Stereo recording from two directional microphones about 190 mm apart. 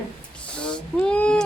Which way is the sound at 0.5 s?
5° left (ahead or behind).